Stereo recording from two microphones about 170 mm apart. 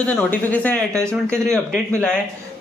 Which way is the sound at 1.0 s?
15° right (ahead or behind).